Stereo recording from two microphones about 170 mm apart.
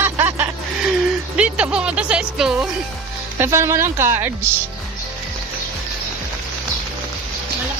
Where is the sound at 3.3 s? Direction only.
15° right (ahead or behind).